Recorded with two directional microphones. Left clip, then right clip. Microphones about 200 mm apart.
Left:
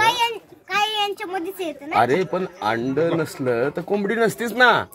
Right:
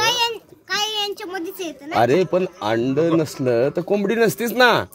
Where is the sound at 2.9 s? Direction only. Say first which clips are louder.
Right 2 dB; 50° right (ahead or behind).